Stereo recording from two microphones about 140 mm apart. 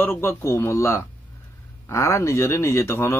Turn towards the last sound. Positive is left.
turn(degrees=20)  # may be behind; listen again after turning